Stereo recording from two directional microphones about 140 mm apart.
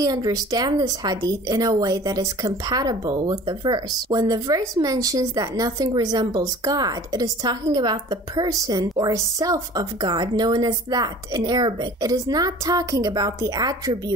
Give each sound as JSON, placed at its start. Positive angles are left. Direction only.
{"t": 0.0, "sound": "speech", "side_deg": -25}